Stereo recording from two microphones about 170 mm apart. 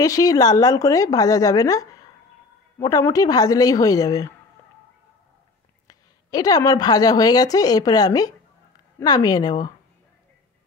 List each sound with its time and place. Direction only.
0.0 s a woman's voice: 20° left (ahead or behind)
5.9 s a woman's voice: 20° left (ahead or behind)